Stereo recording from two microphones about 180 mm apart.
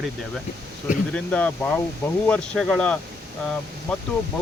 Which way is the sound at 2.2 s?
5° left (ahead or behind).